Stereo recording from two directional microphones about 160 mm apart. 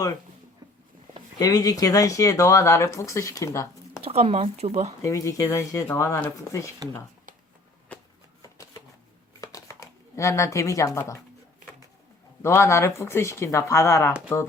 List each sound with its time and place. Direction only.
1.4 s speech: 20° left (ahead or behind)
4.0 s speech: 40° right (ahead or behind)
5.0 s speech: 20° left (ahead or behind)
8.4 s a sound: 20° left (ahead or behind)
12.4 s speech: 15° left (ahead or behind)